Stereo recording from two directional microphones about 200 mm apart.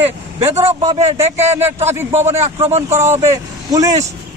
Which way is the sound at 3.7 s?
15° right (ahead or behind).